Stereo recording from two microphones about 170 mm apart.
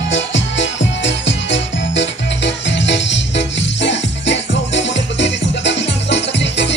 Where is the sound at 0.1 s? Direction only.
90° left.